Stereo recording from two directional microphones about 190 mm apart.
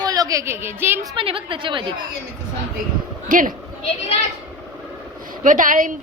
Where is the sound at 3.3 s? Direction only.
45° right (ahead or behind).